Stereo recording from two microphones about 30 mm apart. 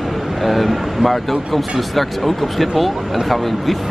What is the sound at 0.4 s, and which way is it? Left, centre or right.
Speech, centre.